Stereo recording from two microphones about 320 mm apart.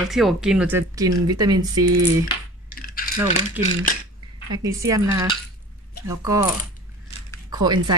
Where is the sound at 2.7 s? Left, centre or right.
Left.